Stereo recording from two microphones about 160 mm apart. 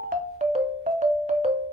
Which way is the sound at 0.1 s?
50° right (ahead or behind).